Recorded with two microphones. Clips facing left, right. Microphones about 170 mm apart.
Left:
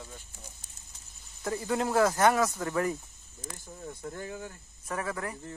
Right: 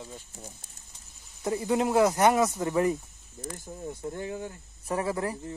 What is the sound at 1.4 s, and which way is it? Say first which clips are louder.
Speech: right 4 dB; 20° right (ahead or behind).